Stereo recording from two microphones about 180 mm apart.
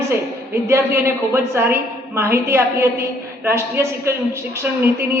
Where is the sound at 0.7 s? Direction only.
15° right (ahead or behind).